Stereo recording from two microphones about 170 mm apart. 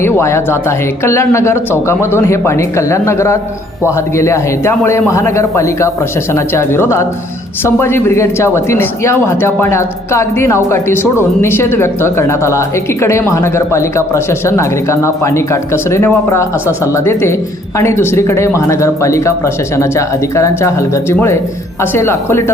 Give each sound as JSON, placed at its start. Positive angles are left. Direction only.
{"t": 0.0, "sound": "a man's voice", "side_deg": 15}